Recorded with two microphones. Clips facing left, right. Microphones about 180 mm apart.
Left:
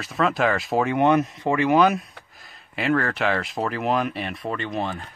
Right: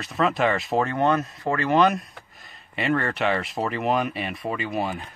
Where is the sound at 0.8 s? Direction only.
15° left (ahead or behind).